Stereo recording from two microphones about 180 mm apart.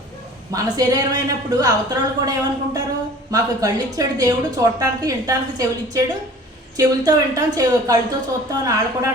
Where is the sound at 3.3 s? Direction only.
20° right (ahead or behind).